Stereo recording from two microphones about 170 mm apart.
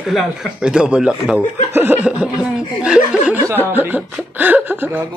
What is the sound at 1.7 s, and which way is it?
Snicker, 10° right (ahead or behind).